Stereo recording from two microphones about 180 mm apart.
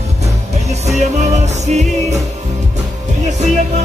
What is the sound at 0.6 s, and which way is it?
Music, 40° right (ahead or behind).